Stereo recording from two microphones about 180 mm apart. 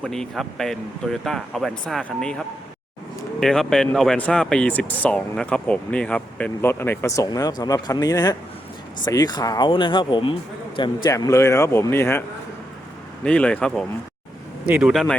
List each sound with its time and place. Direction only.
0.0 s speech: 5° left (ahead or behind)
3.4 s speech: centre (ahead or behind)
13.2 s speech: 5° left (ahead or behind)